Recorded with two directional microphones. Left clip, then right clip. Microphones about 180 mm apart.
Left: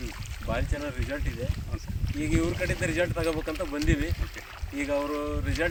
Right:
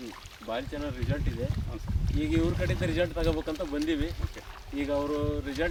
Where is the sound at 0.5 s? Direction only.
Centre (ahead or behind).